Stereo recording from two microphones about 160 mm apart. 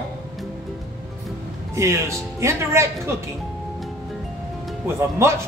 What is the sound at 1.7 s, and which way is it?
A man's voice, 15° right (ahead or behind).